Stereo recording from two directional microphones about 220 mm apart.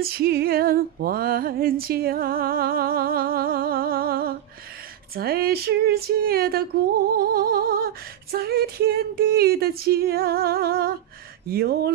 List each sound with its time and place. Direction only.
0.0 s music: 45° right (ahead or behind)
5.1 s female singing: 45° right (ahead or behind)